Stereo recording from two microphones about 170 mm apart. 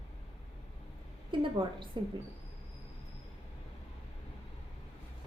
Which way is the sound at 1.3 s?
30° right (ahead or behind).